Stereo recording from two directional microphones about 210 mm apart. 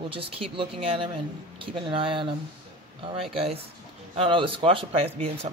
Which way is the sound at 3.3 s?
30° right (ahead or behind).